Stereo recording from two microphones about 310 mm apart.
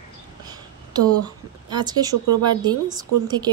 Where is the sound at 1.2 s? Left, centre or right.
Centre.